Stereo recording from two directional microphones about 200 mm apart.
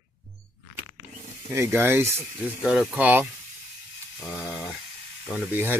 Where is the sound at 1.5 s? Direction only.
15° right (ahead or behind).